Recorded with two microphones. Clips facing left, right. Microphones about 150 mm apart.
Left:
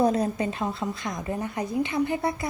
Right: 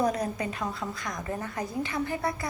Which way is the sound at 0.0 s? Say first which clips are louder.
Left 5 dB; 30° left (ahead or behind).